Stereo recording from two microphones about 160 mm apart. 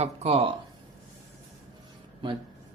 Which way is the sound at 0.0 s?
40° right (ahead or behind).